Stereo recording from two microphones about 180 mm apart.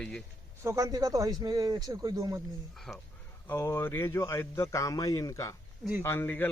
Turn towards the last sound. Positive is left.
turn(degrees=10)  # may be behind; listen again after turning